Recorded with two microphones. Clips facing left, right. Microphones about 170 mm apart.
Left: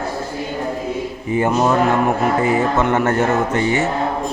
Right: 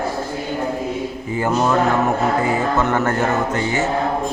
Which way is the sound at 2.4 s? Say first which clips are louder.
Left 2 dB; 20° left (ahead or behind).